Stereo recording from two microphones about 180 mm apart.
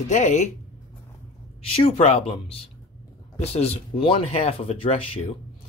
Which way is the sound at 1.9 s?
35° left (ahead or behind).